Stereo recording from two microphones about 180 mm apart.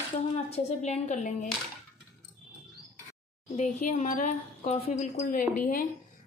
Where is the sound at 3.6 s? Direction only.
45° left (ahead or behind).